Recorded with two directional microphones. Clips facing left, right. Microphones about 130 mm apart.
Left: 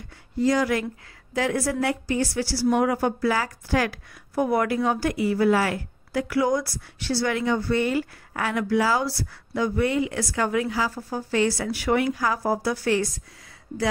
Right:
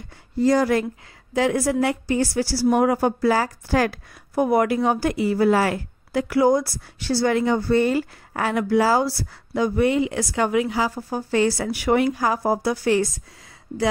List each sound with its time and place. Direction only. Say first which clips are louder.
0.4 s speech: right 4 dB; 40° right (ahead or behind)
1.3 s a woman's voice: right 4 dB; 25° right (ahead or behind)
4.4 s a woman's voice: right 3 dB; 20° right (ahead or behind)